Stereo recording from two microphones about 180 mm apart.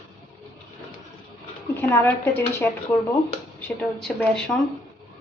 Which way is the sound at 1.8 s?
10° left (ahead or behind).